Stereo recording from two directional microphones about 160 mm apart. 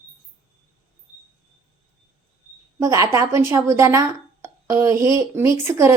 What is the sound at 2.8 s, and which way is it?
A woman's voice, 20° right (ahead or behind).